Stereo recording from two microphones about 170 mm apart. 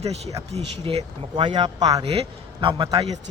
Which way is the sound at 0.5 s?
35° right (ahead or behind).